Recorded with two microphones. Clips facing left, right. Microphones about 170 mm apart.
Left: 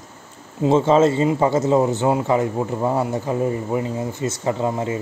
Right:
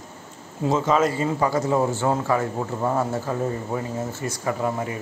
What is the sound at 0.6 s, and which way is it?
Speech, 30° left (ahead or behind).